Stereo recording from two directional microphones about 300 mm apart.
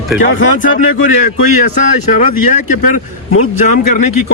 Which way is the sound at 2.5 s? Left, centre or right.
Left.